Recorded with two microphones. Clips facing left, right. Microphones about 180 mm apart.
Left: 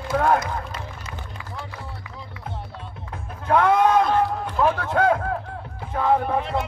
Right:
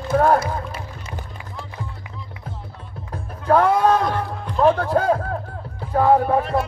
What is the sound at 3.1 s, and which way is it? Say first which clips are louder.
Music: right 3 dB; 35° right (ahead or behind).